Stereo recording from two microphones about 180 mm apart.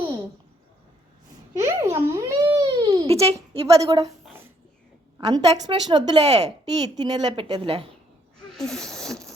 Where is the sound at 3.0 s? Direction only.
35° right (ahead or behind).